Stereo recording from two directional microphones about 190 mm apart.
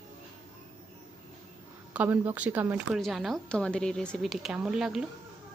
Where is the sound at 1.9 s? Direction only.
10° right (ahead or behind).